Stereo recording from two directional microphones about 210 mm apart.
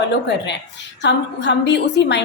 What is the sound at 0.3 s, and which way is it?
A woman's voice, 55° left (ahead or behind).